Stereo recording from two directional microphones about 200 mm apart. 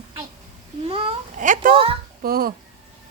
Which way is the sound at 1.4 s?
40° right (ahead or behind).